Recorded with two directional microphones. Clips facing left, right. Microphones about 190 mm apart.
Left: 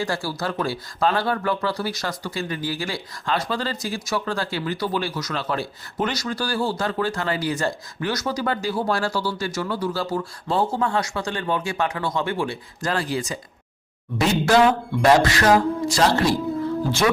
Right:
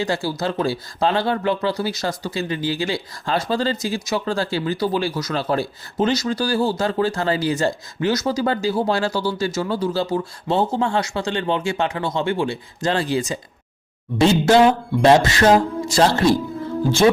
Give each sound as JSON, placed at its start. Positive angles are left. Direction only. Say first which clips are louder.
{"t": 0.0, "sound": "speech", "louder": "right 4 dB", "side_deg": -20}